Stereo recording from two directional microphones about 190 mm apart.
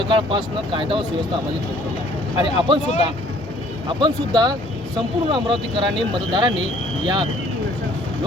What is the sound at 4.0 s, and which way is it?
Speech, 20° right (ahead or behind).